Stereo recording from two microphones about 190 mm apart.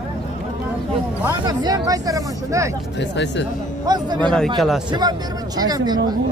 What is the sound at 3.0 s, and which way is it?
Speech, 70° left (ahead or behind).